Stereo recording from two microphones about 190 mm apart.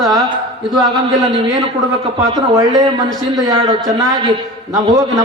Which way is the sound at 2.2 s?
20° right (ahead or behind).